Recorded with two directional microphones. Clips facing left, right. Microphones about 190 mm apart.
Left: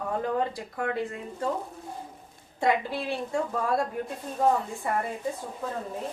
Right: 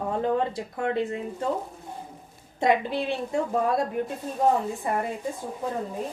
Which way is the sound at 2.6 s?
20° right (ahead or behind).